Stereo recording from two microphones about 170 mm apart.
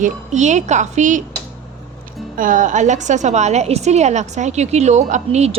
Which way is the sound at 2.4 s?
50° right (ahead or behind).